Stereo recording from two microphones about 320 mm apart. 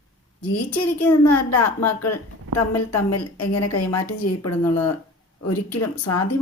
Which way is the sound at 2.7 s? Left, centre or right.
Left.